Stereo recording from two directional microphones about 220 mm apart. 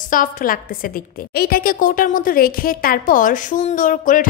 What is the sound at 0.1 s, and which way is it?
A woman's voice, 40° left (ahead or behind).